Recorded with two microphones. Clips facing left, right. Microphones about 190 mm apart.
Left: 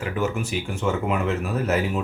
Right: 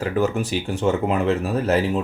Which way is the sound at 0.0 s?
35° right (ahead or behind).